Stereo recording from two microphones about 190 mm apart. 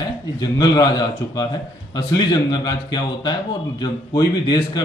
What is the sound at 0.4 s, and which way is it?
A man's voice, 20° left (ahead or behind).